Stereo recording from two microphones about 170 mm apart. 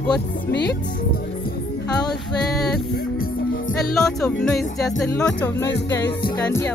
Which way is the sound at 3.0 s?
60° left (ahead or behind).